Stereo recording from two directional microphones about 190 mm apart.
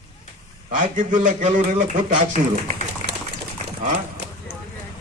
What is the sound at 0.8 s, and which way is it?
A man's voice, 40° right (ahead or behind).